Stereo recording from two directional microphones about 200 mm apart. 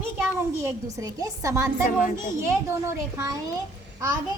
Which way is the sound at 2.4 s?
15° right (ahead or behind).